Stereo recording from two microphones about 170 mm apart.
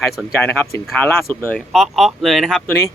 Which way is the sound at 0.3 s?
15° left (ahead or behind).